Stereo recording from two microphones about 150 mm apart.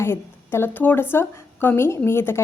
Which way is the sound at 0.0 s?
15° left (ahead or behind).